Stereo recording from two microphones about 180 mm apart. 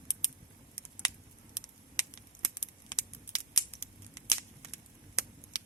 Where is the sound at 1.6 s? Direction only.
20° left (ahead or behind).